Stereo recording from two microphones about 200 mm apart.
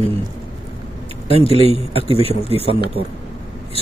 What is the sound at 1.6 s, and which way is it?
Speech, 30° right (ahead or behind).